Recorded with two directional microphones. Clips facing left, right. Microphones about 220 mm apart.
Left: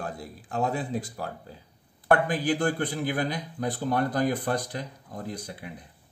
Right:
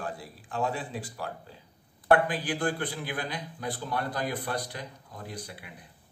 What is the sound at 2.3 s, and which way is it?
A man's voice, 45° left (ahead or behind).